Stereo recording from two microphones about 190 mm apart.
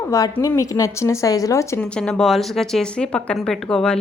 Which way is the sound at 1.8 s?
5° left (ahead or behind).